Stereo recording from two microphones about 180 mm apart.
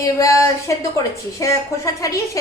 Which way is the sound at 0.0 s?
15° left (ahead or behind).